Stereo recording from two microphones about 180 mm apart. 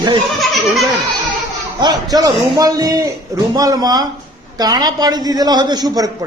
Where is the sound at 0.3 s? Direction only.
Centre (ahead or behind).